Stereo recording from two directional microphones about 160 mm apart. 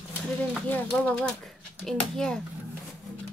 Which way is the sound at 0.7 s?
10° left (ahead or behind).